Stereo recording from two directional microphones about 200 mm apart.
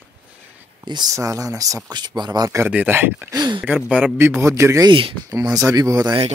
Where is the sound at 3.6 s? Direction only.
5° right (ahead or behind).